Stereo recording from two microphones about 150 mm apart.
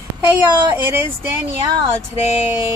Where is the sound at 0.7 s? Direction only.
15° right (ahead or behind).